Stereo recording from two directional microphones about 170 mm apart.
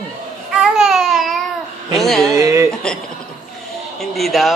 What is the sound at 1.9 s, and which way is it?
Speech, centre (ahead or behind).